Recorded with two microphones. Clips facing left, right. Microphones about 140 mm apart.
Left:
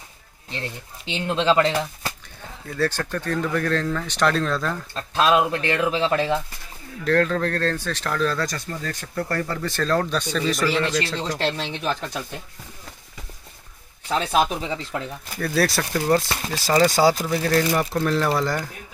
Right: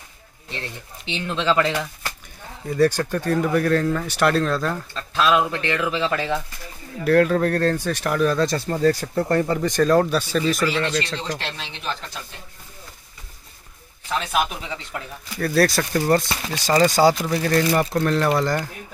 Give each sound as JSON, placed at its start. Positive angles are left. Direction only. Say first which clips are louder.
{"t": 1.3, "sound": "speech", "louder": "left 2 dB", "side_deg": 20}
{"t": 2.7, "sound": "speech", "louder": "right 5 dB", "side_deg": -15}
{"t": 4.9, "sound": "speech", "louder": "left 1 dB", "side_deg": 35}
{"t": 7.1, "sound": "speech", "louder": "right 4 dB", "side_deg": -10}
{"t": 8.5, "sound": "speech", "louder": "right 11 dB", "side_deg": -35}
{"t": 9.3, "sound": "speech", "louder": "right 7 dB", "side_deg": -20}
{"t": 11.4, "sound": "speech", "louder": "left 6 dB", "side_deg": 45}
{"t": 14.0, "sound": "speech", "louder": "left 2 dB", "side_deg": 30}
{"t": 15.3, "sound": "speech", "louder": "right 3 dB", "side_deg": 0}